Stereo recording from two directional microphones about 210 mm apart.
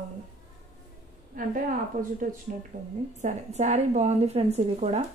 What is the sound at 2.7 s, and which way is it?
A woman's voice, 35° right (ahead or behind).